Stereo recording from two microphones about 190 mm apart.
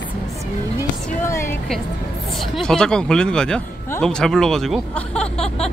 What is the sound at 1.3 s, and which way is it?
Music, 15° left (ahead or behind).